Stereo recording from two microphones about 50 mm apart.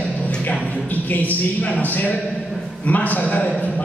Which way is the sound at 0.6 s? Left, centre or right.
Left.